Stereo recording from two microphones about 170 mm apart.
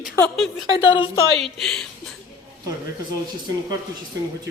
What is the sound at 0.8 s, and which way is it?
Speech, 30° left (ahead or behind).